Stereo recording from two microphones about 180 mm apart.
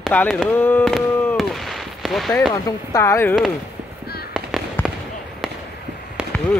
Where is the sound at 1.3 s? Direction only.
Centre (ahead or behind).